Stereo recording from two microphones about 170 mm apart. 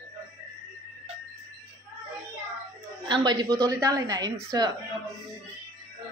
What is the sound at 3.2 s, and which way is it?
A woman's voice, 25° right (ahead or behind).